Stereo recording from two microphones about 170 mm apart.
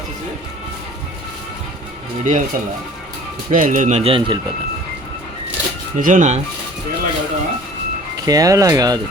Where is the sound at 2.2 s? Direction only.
50° right (ahead or behind); by 4.4 s 30° right (ahead or behind).